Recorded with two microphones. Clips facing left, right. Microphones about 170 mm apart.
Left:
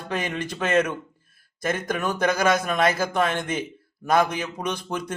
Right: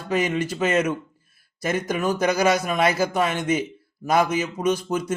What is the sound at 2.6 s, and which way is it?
A man's voice, 5° right (ahead or behind).